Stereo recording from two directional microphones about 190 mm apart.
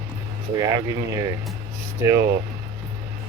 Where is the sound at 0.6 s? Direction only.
20° right (ahead or behind).